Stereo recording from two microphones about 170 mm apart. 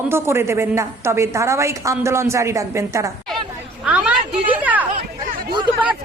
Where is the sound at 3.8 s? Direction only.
5° right (ahead or behind).